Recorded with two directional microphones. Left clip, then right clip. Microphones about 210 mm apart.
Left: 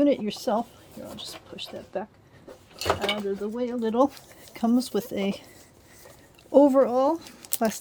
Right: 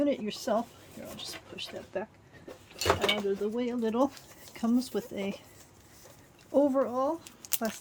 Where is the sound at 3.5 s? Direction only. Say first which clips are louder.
Left 5 dB; 30° left (ahead or behind); by 5.4 s 45° left (ahead or behind).